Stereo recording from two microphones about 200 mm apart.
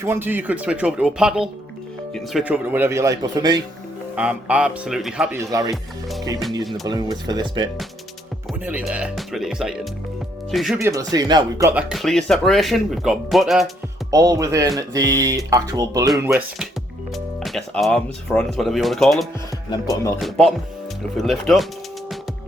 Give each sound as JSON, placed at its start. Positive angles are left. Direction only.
{"t": 0.0, "sound": "speech", "side_deg": -10}
{"t": 4.1, "sound": "speech", "side_deg": -5}
{"t": 5.5, "sound": "speech", "side_deg": -15}
{"t": 5.7, "sound": "speech", "side_deg": 0}
{"t": 6.8, "sound": "speech", "side_deg": -20}
{"t": 8.6, "sound": "speech", "side_deg": -5}
{"t": 10.8, "sound": "speech", "side_deg": -15}
{"t": 11.7, "sound": "speech", "side_deg": -5}
{"t": 14.1, "sound": "speech", "side_deg": -20}
{"t": 17.4, "sound": "speech", "side_deg": 0}